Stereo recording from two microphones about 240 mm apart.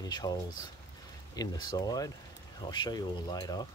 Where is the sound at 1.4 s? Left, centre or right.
Centre.